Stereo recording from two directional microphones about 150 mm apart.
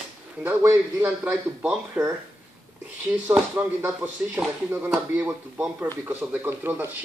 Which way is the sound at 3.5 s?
15° right (ahead or behind).